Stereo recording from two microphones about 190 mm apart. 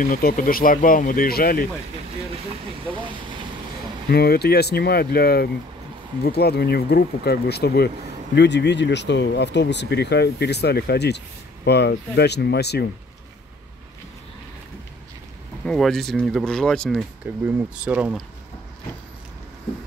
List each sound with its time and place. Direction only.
0.0 s speech: 50° left (ahead or behind)
3.0 s vehicle: 25° right (ahead or behind)
4.1 s speech: 55° left (ahead or behind)
15.6 s speech: 5° left (ahead or behind)
17.5 s speech: 10° right (ahead or behind)